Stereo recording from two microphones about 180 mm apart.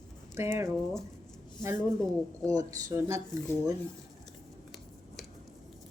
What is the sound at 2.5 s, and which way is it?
Speech, 20° right (ahead or behind).